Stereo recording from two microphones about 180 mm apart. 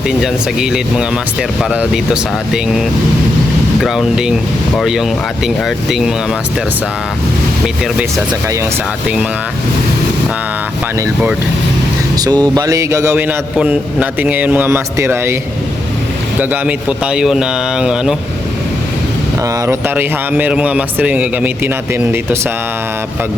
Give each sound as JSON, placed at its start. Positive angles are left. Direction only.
{"t": 0.2, "sound": "speech", "side_deg": -5}
{"t": 3.8, "sound": "speech", "side_deg": -5}
{"t": 12.1, "sound": "a man's voice", "side_deg": -20}
{"t": 16.4, "sound": "speech", "side_deg": -10}
{"t": 19.6, "sound": "a man's voice", "side_deg": -10}